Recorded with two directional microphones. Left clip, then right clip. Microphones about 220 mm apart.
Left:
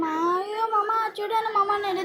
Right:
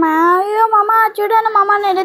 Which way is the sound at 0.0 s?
35° right (ahead or behind).